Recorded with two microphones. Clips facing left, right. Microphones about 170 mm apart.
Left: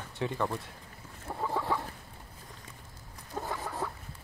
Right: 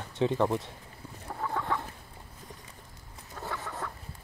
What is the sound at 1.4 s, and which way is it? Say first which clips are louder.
Chicken: left 1 dB; 10° left (ahead or behind).